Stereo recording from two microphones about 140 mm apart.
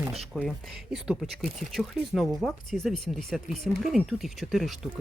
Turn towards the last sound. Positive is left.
turn(degrees=0)  # may be behind; listen again after turning